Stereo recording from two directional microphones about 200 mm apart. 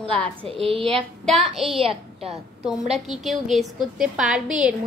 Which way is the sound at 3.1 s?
Centre (ahead or behind).